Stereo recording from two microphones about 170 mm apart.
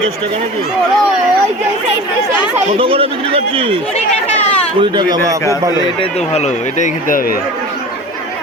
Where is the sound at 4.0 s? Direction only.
40° left (ahead or behind).